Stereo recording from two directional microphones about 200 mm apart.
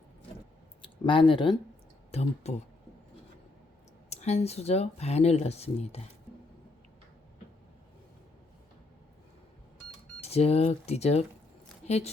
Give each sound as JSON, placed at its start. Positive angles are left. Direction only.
{"t": 0.8, "sound": "speech", "side_deg": 25}
{"t": 4.1, "sound": "speech", "side_deg": 35}
{"t": 10.2, "sound": "a woman's voice", "side_deg": 30}